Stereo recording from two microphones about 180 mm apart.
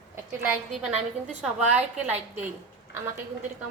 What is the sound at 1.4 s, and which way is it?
Speech, 10° right (ahead or behind).